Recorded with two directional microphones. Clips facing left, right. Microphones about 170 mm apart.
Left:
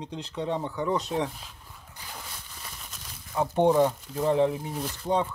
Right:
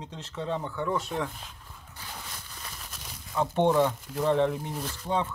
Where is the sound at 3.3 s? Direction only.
10° left (ahead or behind).